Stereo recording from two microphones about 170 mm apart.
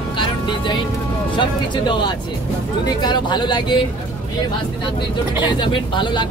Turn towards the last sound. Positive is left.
turn(degrees=25)  # may be behind; listen again after turning